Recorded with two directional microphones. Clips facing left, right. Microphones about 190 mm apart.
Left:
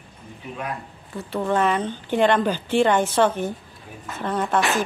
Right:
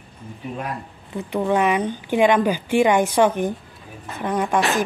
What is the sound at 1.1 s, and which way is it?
A woman's voice, 15° right (ahead or behind).